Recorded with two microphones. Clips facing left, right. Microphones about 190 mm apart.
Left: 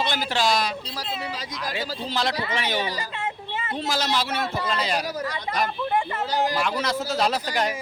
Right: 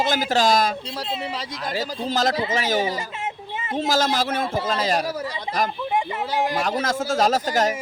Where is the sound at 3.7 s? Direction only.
45° right (ahead or behind).